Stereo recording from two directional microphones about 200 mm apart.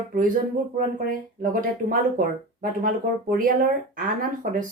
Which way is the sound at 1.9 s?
45° right (ahead or behind).